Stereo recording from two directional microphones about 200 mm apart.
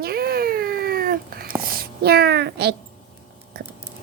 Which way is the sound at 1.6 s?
50° right (ahead or behind).